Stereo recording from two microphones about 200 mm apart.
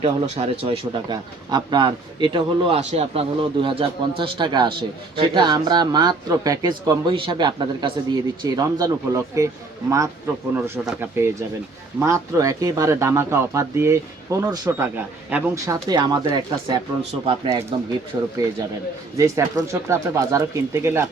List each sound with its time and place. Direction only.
0.0 s a man's voice: 30° right (ahead or behind)
10.5 s a man's voice: 10° right (ahead or behind)